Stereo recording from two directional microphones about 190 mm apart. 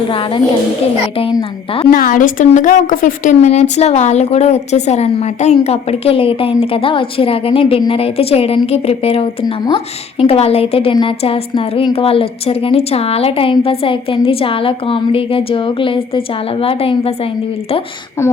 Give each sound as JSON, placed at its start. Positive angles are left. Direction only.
{"t": 0.1, "sound": "a woman's voice", "side_deg": 30}
{"t": 1.9, "sound": "a woman's voice", "side_deg": 45}